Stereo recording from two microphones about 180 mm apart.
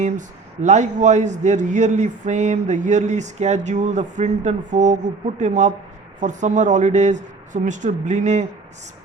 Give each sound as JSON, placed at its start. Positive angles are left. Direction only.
{"t": 0.0, "sound": "speech", "side_deg": -40}